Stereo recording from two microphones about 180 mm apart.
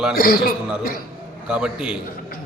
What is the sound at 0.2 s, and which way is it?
Speech, 55° left (ahead or behind).